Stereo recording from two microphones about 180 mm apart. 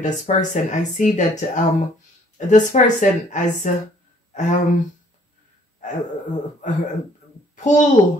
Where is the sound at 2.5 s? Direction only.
45° left (ahead or behind).